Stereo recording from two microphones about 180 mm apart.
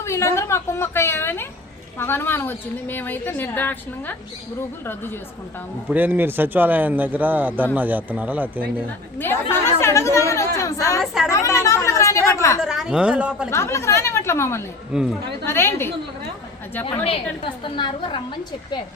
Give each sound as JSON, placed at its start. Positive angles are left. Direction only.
{"t": 0.0, "sound": "a woman's voice", "side_deg": 15}
{"t": 5.9, "sound": "speech", "side_deg": -10}
{"t": 9.1, "sound": "a woman's voice", "side_deg": 10}
{"t": 11.0, "sound": "a woman's voice", "side_deg": 0}
{"t": 11.3, "sound": "speech", "side_deg": 15}
{"t": 12.6, "sound": "a woman's voice", "side_deg": -5}
{"t": 13.5, "sound": "a woman's voice", "side_deg": 15}
{"t": 14.9, "sound": "a woman's voice", "side_deg": -5}
{"t": 15.4, "sound": "a woman's voice", "side_deg": 15}
{"t": 17.4, "sound": "a woman's voice", "side_deg": 30}